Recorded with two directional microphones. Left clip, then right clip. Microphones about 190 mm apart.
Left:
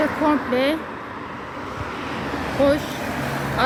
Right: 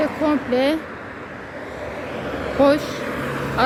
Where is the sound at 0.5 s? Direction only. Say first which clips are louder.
Right 1 dB; 25° right (ahead or behind).